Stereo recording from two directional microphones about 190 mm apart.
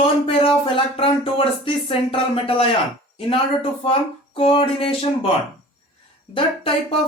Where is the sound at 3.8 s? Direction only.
30° left (ahead or behind).